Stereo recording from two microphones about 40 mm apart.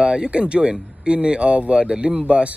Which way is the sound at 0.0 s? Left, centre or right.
Right.